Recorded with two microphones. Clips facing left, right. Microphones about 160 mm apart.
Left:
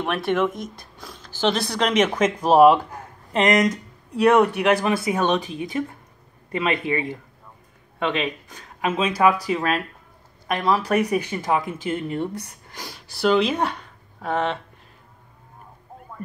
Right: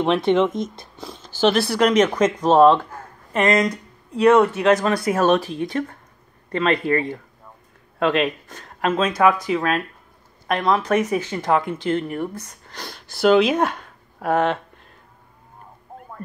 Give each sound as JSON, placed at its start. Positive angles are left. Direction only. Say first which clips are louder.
{"t": 0.0, "sound": "speech", "louder": "right 5 dB", "side_deg": -20}
{"t": 1.6, "sound": "speech", "louder": "right 4 dB", "side_deg": -5}
{"t": 4.9, "sound": "speech", "louder": "right 3 dB", "side_deg": 0}
{"t": 9.1, "sound": "speech", "louder": "even", "side_deg": 35}
{"t": 10.5, "sound": "speech", "louder": "right 2 dB", "side_deg": 5}